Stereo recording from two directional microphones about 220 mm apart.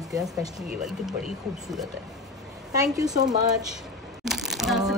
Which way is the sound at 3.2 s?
15° right (ahead or behind).